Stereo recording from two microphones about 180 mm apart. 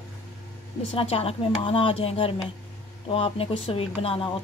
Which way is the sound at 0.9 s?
30° left (ahead or behind).